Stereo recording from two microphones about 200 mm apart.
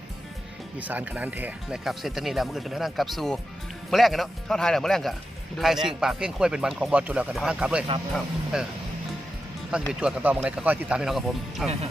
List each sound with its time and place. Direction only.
0.8 s speech: 10° right (ahead or behind)
9.7 s speech: 5° right (ahead or behind)